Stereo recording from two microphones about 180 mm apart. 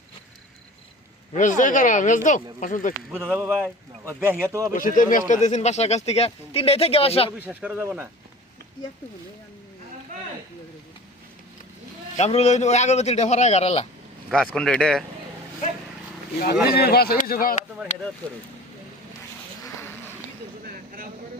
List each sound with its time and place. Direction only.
1.4 s speech: 45° left (ahead or behind)
3.2 s speech: 10° right (ahead or behind)
4.7 s speech: 50° left (ahead or behind); by 7.3 s 30° left (ahead or behind)
7.3 s speech: 10° right (ahead or behind)
12.1 s speech: 35° left (ahead or behind)
14.3 s speech: 5° left (ahead or behind)
16.7 s speech: 60° left (ahead or behind)
19.6 s a sound: 15° left (ahead or behind)